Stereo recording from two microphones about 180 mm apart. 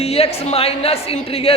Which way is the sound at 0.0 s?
35° left (ahead or behind).